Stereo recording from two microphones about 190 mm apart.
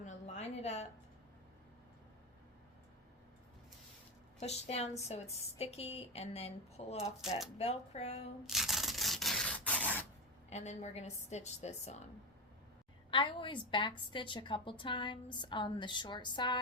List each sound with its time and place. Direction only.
0.0 s a sound: 35° left (ahead or behind)
4.4 s a woman's voice: 35° left (ahead or behind)
7.2 s speech: centre (ahead or behind)
7.6 s a woman's voice: 35° left (ahead or behind)
8.4 s a sound: centre (ahead or behind)
10.5 s a woman's voice: 35° left (ahead or behind)
13.1 s a woman's voice: 25° left (ahead or behind)